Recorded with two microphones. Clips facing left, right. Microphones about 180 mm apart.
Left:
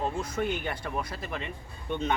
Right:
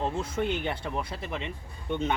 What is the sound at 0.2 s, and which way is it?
Speech, 25° right (ahead or behind).